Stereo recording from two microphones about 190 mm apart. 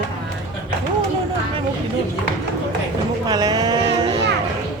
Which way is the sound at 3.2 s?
20° right (ahead or behind).